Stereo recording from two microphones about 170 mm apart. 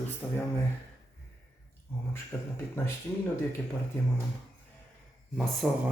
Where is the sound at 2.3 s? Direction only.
5° left (ahead or behind).